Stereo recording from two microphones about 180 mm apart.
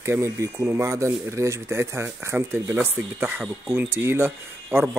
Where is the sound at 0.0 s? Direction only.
15° right (ahead or behind).